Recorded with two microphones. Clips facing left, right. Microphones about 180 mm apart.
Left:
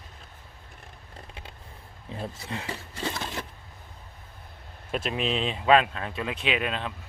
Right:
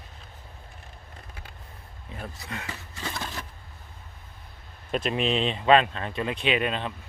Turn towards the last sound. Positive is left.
turn(degrees=0)  # may be behind; listen again after turning